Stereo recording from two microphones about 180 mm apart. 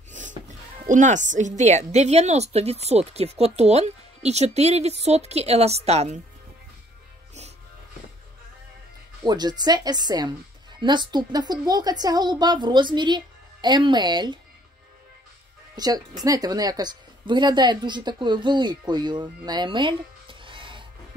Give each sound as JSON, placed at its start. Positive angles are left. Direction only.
{"t": 0.1, "sound": "music", "side_deg": -45}
{"t": 1.6, "sound": "speech", "side_deg": -40}
{"t": 9.2, "sound": "a woman's voice", "side_deg": -25}
{"t": 15.7, "sound": "a woman's voice", "side_deg": -20}